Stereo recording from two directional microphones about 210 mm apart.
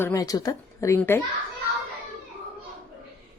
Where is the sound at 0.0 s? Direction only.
15° left (ahead or behind).